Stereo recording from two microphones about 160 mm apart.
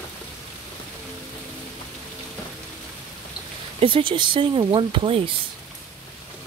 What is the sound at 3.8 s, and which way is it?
Speech, 30° right (ahead or behind).